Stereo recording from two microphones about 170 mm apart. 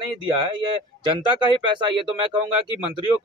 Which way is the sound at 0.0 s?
30° right (ahead or behind).